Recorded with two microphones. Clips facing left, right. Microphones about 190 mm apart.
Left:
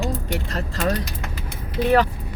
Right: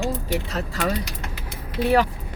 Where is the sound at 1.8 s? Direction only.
10° right (ahead or behind).